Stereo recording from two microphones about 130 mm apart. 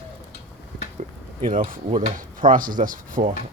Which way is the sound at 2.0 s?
90° right.